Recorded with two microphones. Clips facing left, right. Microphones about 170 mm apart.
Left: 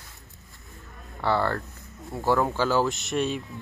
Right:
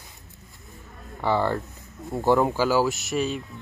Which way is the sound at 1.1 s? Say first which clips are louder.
Right 2 dB; 15° right (ahead or behind).